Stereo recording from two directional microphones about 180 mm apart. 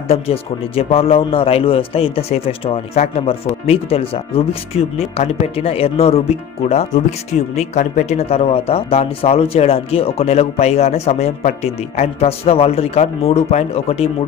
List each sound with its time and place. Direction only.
0.1 s speech: 35° left (ahead or behind)